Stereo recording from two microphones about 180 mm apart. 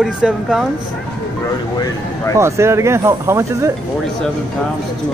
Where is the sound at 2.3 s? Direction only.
15° right (ahead or behind).